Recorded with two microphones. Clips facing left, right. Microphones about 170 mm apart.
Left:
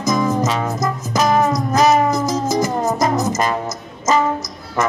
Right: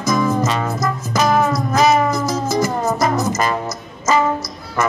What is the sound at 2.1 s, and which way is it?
Music, 20° left (ahead or behind).